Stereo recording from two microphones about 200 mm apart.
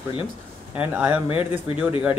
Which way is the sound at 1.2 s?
25° left (ahead or behind).